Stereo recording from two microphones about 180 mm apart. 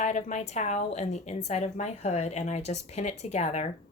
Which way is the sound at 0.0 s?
40° left (ahead or behind).